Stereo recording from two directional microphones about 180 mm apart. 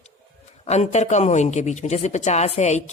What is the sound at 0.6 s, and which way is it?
A man's voice, 35° left (ahead or behind).